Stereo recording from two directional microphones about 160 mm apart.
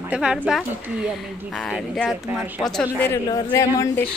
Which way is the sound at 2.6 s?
10° left (ahead or behind).